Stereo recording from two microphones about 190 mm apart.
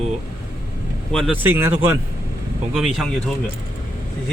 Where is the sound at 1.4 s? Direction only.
10° right (ahead or behind).